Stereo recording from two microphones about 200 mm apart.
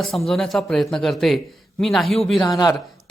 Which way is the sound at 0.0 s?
Centre (ahead or behind).